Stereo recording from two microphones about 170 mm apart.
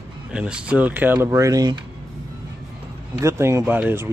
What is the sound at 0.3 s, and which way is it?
Speech, 5° right (ahead or behind).